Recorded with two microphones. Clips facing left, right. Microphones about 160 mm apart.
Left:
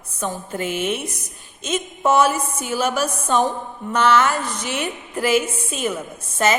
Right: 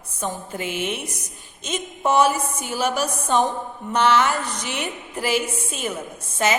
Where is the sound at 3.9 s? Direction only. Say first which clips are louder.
Left 1 dB; 50° left (ahead or behind).